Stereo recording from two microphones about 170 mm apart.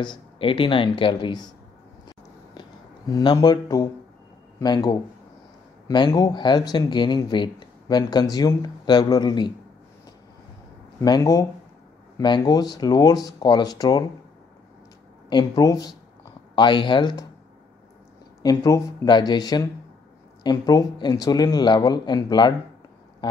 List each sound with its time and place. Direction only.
0.0 s speech: 30° left (ahead or behind)
3.1 s speech: 25° left (ahead or behind)
11.0 s speech: 20° left (ahead or behind)
15.2 s speech: 25° left (ahead or behind)
18.4 s speech: 20° left (ahead or behind)